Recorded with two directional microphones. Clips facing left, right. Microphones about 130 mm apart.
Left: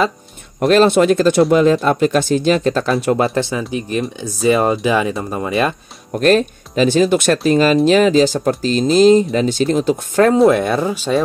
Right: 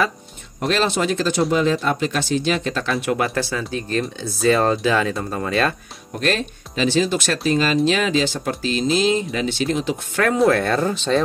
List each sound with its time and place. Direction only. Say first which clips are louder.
0.6 s speech: left 9 dB; 50° left (ahead or behind); by 5.8 s 15° left (ahead or behind)
6.1 s speech: left 9 dB; 45° left (ahead or behind)
10.2 s speech: left 6 dB; 30° left (ahead or behind)
10.5 s speech: left 3 dB; 15° left (ahead or behind)